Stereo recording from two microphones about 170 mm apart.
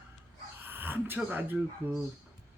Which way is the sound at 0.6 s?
10° right (ahead or behind).